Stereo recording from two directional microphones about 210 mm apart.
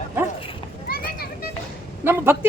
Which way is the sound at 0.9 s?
45° left (ahead or behind).